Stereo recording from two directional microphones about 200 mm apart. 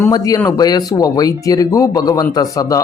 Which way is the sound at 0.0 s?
15° left (ahead or behind).